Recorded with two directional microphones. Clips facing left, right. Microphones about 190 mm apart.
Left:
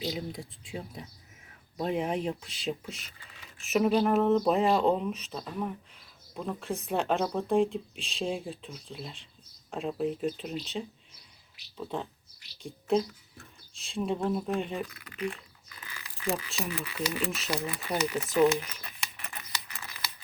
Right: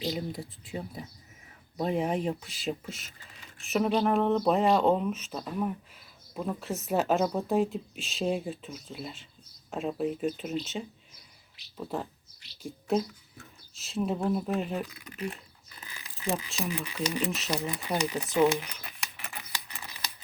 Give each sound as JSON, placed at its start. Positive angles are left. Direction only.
{"t": 0.0, "sound": "speech", "side_deg": 0}
{"t": 11.9, "sound": "speech", "side_deg": -5}
{"t": 15.2, "sound": "a sound", "side_deg": -30}
{"t": 16.6, "sound": "speech", "side_deg": -15}
{"t": 18.6, "sound": "speech", "side_deg": 0}
{"t": 19.7, "sound": "typewriter", "side_deg": -15}